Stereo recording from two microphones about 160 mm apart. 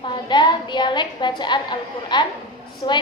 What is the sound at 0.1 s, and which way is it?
A woman's voice, 30° left (ahead or behind).